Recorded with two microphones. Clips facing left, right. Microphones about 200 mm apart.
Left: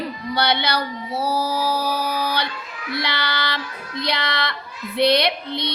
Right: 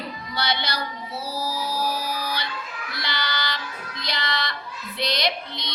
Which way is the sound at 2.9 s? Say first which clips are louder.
Left 5 dB; 60° left (ahead or behind).